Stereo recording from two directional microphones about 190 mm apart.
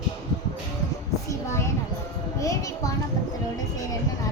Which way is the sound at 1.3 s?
15° left (ahead or behind).